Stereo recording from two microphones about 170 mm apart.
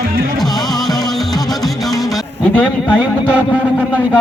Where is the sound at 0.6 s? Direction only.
Centre (ahead or behind).